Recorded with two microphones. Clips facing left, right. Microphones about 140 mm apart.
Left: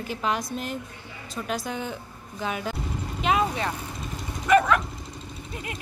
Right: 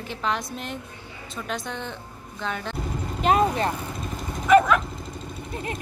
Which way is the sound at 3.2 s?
40° right (ahead or behind).